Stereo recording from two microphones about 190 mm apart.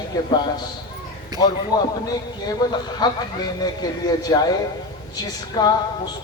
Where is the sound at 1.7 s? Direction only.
20° left (ahead or behind).